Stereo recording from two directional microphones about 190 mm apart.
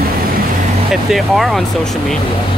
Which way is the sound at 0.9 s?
Centre (ahead or behind).